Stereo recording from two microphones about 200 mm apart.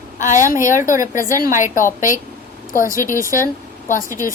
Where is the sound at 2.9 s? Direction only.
15° right (ahead or behind).